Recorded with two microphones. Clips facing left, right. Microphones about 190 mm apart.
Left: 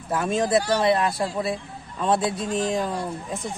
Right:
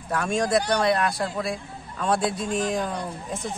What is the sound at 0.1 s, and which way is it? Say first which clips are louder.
Speech: left 1 dB; 5° left (ahead or behind).